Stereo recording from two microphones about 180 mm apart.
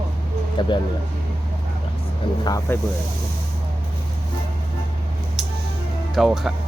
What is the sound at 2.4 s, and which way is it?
Speech, 20° left (ahead or behind).